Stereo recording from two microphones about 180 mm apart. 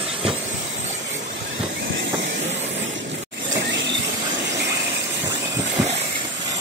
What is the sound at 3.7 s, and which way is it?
Train, 80° right.